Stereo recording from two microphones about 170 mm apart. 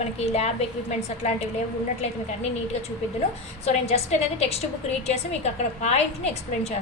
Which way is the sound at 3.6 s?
40° left (ahead or behind).